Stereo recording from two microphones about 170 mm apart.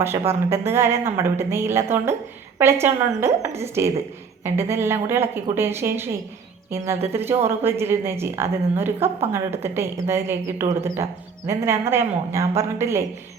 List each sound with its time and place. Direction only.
0.3 s a woman's voice: 15° right (ahead or behind)